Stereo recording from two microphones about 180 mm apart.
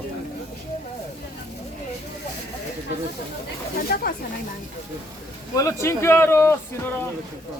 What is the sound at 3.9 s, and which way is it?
Speech, 55° left (ahead or behind).